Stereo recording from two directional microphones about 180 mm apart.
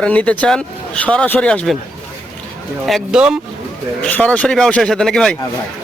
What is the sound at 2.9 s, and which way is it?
Speech, centre (ahead or behind).